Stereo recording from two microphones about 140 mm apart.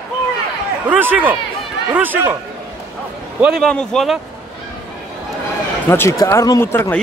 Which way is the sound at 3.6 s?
5° left (ahead or behind).